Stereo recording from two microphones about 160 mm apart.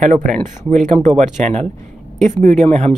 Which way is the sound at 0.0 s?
55° right (ahead or behind).